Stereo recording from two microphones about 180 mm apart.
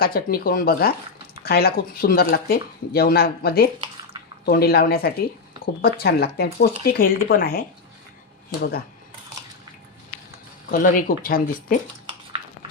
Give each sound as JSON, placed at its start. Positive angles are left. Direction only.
{"t": 0.0, "sound": "speech", "side_deg": 55}
{"t": 10.7, "sound": "speech", "side_deg": 50}